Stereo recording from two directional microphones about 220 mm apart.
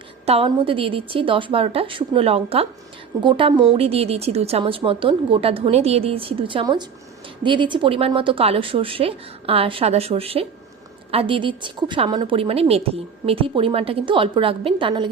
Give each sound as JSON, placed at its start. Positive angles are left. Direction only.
{"t": 0.3, "sound": "a woman's voice", "side_deg": -25}